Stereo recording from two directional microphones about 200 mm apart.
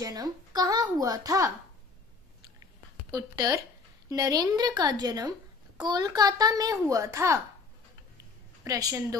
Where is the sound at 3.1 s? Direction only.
20° right (ahead or behind).